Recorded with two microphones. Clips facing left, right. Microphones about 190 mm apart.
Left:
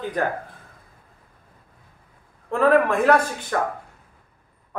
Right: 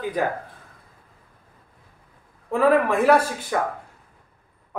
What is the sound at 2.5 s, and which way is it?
A man's voice, 5° right (ahead or behind).